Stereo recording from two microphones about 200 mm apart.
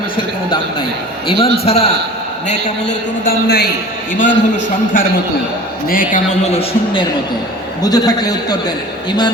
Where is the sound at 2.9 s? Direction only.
45° left (ahead or behind).